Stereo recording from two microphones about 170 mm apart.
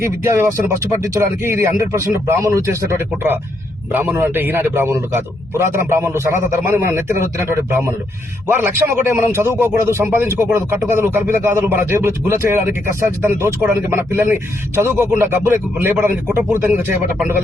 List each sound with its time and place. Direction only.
0.0 s a man's voice: 15° right (ahead or behind)